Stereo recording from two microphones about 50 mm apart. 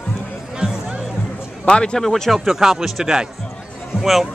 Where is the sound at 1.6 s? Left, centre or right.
Centre.